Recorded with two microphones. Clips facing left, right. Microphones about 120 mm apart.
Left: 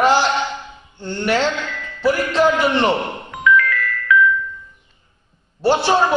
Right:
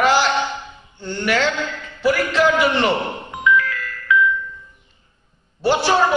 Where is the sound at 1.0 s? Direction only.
25° left (ahead or behind).